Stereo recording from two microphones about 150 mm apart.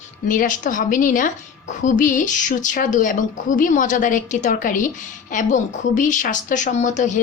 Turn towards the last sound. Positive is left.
turn(degrees=55)  # may be behind; listen again after turning